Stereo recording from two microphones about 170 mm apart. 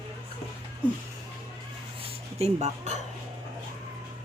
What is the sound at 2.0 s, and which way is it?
Dog, 40° right (ahead or behind).